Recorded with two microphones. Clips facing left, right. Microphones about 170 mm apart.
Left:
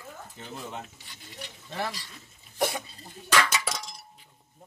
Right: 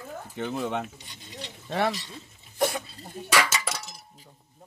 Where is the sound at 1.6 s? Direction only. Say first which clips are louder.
Right 7 dB; 70° right (ahead or behind).